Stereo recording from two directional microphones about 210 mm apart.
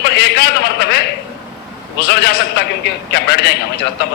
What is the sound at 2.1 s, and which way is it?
A man's voice, 55° left (ahead or behind).